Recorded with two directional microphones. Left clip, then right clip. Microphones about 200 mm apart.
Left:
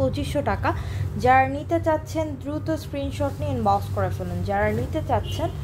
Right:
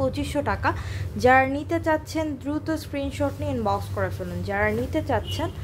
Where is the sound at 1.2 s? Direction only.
20° right (ahead or behind).